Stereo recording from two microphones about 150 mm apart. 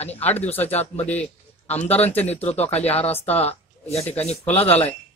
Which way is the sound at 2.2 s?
45° left (ahead or behind).